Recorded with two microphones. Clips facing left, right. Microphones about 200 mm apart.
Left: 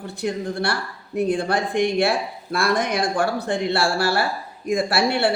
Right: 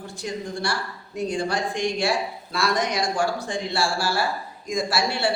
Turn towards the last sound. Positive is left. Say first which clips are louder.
# left 4 dB
turn(degrees=60)  # may be behind; listen again after turning